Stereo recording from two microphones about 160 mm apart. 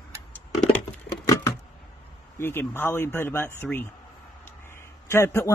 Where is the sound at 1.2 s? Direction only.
20° left (ahead or behind).